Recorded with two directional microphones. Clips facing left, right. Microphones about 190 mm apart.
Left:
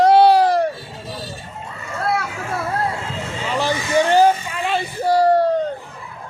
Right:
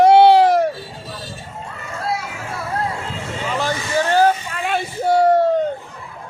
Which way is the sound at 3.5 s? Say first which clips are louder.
Left 3 dB; 15° left (ahead or behind).